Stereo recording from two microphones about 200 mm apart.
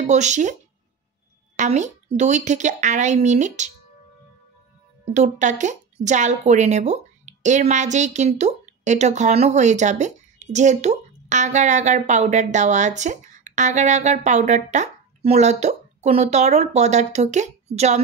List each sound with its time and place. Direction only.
0.0 s a woman's voice: 35° right (ahead or behind)
1.6 s a woman's voice: 35° right (ahead or behind)
5.1 s a woman's voice: 35° right (ahead or behind)